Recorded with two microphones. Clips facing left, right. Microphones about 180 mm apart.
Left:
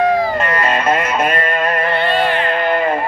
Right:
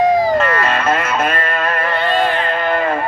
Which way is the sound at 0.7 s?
15° left (ahead or behind).